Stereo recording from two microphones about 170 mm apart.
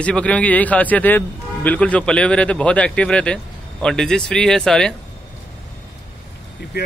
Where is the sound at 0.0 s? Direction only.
5° left (ahead or behind).